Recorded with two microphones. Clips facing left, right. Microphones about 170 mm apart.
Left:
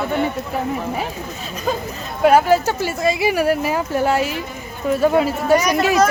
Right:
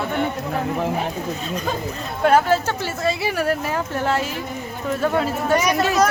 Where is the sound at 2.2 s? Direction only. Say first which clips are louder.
Left 3 dB; 10° left (ahead or behind).